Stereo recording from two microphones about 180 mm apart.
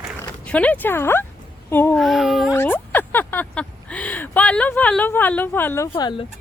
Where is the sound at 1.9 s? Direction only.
Centre (ahead or behind).